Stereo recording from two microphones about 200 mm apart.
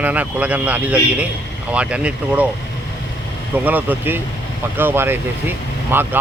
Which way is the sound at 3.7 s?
10° right (ahead or behind).